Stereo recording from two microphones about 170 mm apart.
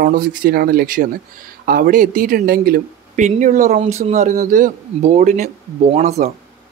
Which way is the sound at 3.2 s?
50° right (ahead or behind).